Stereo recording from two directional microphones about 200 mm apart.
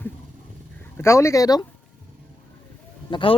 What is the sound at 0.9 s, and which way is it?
Speech, 15° left (ahead or behind).